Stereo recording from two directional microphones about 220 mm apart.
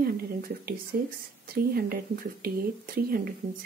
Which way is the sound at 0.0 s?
45° right (ahead or behind).